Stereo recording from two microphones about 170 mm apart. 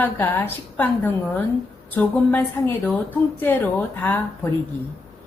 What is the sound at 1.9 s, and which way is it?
A woman's voice, 10° left (ahead or behind).